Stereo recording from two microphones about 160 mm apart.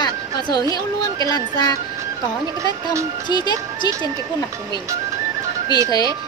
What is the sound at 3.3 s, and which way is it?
Speech, 25° left (ahead or behind).